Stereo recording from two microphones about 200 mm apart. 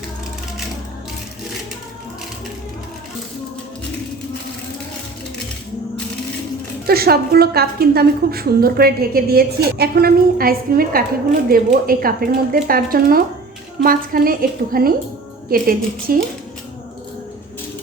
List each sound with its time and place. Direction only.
6.8 s a woman's voice: 50° right (ahead or behind)